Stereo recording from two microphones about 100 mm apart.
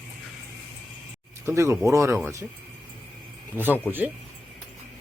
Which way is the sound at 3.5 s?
20° right (ahead or behind).